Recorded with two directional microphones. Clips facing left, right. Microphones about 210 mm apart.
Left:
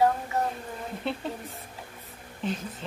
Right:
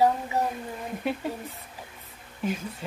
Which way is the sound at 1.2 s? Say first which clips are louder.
Right 2 dB; 10° right (ahead or behind).